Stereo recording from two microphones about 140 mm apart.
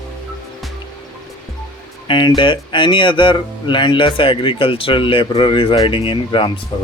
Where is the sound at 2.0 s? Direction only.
35° left (ahead or behind).